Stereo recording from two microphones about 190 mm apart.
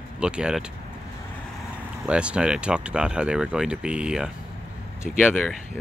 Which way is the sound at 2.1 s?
5° right (ahead or behind).